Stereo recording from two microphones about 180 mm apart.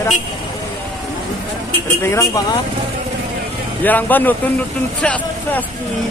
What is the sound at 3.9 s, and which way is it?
Speech, 10° left (ahead or behind).